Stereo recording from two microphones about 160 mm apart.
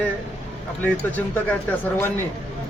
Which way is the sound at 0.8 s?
10° left (ahead or behind).